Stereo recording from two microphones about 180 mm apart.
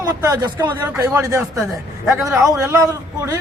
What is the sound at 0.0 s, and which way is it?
Speech, 20° right (ahead or behind).